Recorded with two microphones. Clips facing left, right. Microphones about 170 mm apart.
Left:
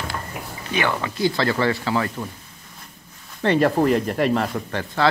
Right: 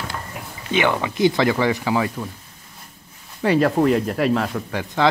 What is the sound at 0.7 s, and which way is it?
Speech, 20° right (ahead or behind).